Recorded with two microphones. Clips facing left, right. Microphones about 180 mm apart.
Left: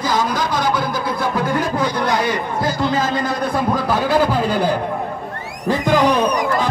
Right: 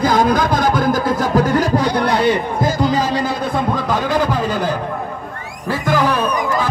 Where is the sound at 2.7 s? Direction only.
40° right (ahead or behind).